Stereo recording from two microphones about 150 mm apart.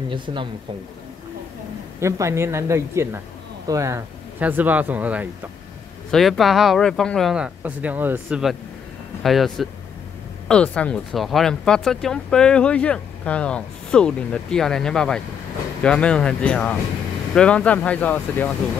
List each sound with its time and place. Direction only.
0.1 s speech: 35° right (ahead or behind)
2.0 s speech: 20° right (ahead or behind)
6.1 s speech: centre (ahead or behind)